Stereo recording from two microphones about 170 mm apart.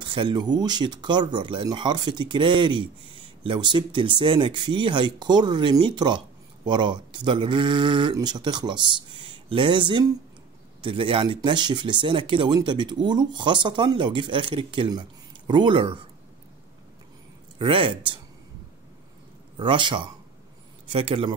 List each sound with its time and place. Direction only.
0.0 s speech: 30° right (ahead or behind)
17.6 s speech: 30° right (ahead or behind)
19.5 s a man's voice: 30° right (ahead or behind)